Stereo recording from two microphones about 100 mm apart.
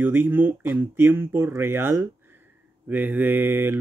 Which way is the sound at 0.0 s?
20° right (ahead or behind).